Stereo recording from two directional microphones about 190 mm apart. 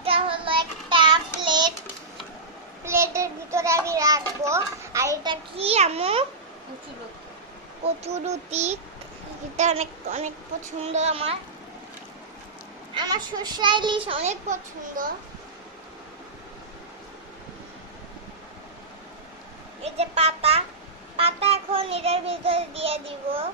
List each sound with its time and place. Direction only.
0.0 s child singing: 30° right (ahead or behind)
2.8 s a sound: 15° right (ahead or behind); by 6.2 s 30° right (ahead or behind)
8.0 s child singing: 35° right (ahead or behind)
12.9 s a child's voice: 20° right (ahead or behind); by 15.1 s 40° right (ahead or behind)
19.8 s a sound: 35° right (ahead or behind)
21.2 s child singing: 30° right (ahead or behind)